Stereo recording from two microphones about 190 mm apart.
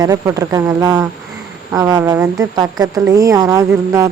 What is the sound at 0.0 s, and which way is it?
A woman's voice, 20° right (ahead or behind).